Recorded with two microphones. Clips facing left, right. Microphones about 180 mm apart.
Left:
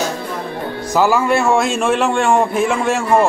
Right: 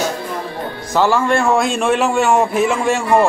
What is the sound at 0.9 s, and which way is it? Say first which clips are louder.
A man's voice: even; 5° left (ahead or behind).